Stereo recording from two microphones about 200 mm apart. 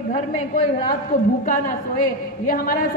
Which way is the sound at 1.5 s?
45° left (ahead or behind).